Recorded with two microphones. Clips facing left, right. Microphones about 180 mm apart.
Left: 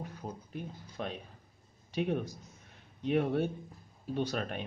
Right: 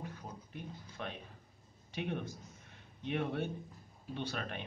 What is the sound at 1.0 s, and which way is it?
Speech, 35° left (ahead or behind).